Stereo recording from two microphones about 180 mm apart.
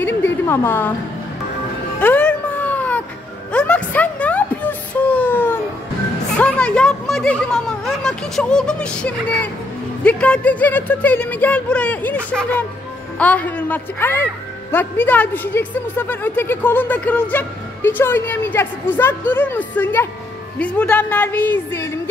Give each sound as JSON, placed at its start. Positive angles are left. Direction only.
{"t": 0.0, "sound": "a woman's voice", "side_deg": 10}
{"t": 2.0, "sound": "a sound", "side_deg": 10}
{"t": 10.0, "sound": "speech", "side_deg": 5}